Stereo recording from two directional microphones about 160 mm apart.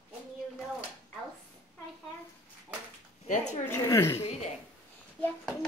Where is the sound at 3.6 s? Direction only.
15° left (ahead or behind).